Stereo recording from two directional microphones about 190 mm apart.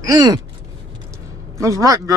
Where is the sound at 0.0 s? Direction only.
20° right (ahead or behind).